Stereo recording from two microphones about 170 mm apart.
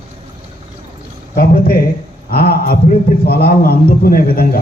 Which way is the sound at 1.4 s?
60° left (ahead or behind).